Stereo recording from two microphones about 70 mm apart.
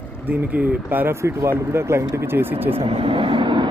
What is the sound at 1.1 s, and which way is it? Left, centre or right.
Speech, right.